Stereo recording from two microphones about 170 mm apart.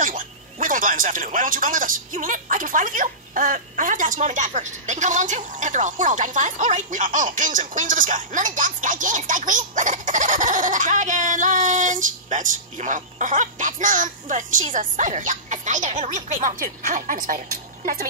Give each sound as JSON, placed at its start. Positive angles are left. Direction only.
{"t": 0.0, "sound": "speech", "side_deg": -50}